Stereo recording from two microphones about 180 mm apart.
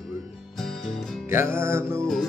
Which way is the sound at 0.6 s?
Centre (ahead or behind).